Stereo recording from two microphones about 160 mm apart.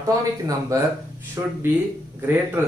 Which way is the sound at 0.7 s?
20° right (ahead or behind).